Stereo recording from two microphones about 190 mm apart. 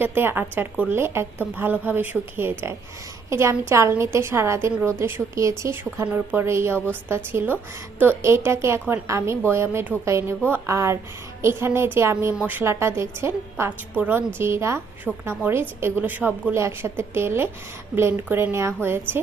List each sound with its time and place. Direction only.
0.0 s a woman's voice: 10° right (ahead or behind)